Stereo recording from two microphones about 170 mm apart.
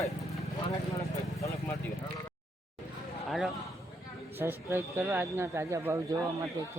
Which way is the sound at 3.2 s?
Centre (ahead or behind).